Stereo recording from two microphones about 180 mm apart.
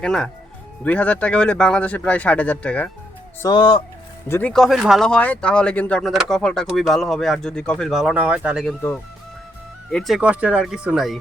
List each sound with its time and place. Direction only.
0.0 s speech: 5° left (ahead or behind)
3.4 s speech: 25° left (ahead or behind)
4.3 s speech: 10° left (ahead or behind)
9.9 s speech: centre (ahead or behind)